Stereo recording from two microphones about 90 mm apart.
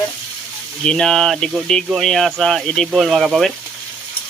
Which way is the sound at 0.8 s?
5° left (ahead or behind).